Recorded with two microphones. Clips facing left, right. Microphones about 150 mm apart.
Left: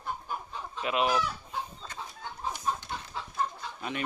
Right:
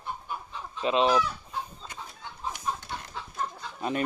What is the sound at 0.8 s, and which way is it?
Speech, 25° right (ahead or behind).